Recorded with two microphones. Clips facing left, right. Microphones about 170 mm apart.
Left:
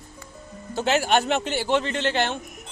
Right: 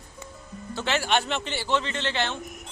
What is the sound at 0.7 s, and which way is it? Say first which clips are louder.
Speech: left 4 dB; 45° left (ahead or behind).